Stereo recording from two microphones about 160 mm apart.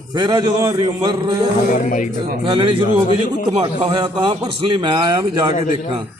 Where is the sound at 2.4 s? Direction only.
30° right (ahead or behind).